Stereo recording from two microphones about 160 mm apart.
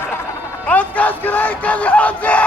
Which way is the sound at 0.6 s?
10° left (ahead or behind).